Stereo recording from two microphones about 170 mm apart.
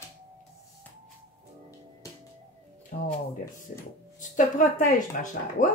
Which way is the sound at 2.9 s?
55° left (ahead or behind).